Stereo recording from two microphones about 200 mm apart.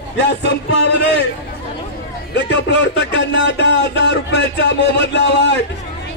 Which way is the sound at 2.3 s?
60° left (ahead or behind).